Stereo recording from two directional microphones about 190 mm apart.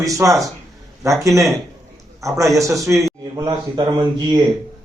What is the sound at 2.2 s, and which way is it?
Speech, 15° right (ahead or behind).